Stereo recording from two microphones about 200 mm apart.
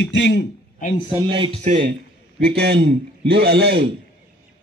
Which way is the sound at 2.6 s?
55° right (ahead or behind).